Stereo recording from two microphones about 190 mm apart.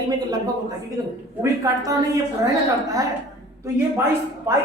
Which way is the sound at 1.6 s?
20° right (ahead or behind).